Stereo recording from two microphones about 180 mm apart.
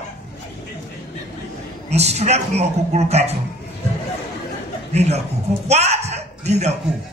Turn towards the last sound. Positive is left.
turn(degrees=-40)  # may be behind; listen again after turning